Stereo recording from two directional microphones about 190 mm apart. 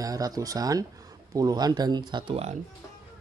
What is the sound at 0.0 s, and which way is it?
Speech, 20° right (ahead or behind).